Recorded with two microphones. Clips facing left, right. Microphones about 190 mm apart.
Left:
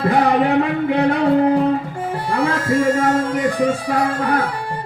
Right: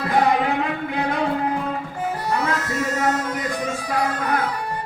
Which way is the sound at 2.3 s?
30° left (ahead or behind).